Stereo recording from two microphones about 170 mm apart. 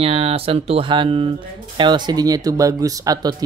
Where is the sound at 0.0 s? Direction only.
35° right (ahead or behind).